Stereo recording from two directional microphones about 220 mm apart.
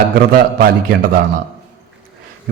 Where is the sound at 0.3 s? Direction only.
40° right (ahead or behind).